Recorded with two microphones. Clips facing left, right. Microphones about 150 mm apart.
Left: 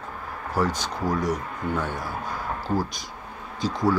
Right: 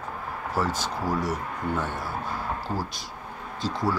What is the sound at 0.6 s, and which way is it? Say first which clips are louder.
Speech: left 2 dB; 5° right (ahead or behind).